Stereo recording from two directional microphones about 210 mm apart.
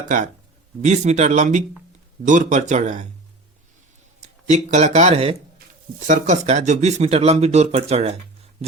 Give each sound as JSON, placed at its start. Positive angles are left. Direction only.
{"t": 0.8, "sound": "speech", "side_deg": -35}
{"t": 4.2, "sound": "speech", "side_deg": -35}